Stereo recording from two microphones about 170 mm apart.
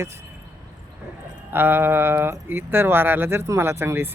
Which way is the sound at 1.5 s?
10° right (ahead or behind).